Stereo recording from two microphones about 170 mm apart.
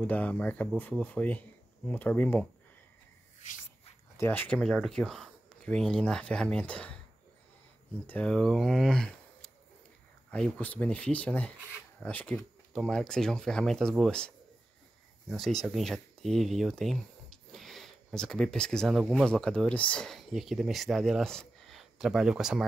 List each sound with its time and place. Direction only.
0.0 s speech: 10° left (ahead or behind)
4.2 s speech: 10° left (ahead or behind)
8.1 s speech: 5° left (ahead or behind)